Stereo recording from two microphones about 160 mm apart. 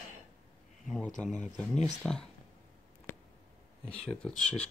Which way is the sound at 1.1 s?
5° left (ahead or behind).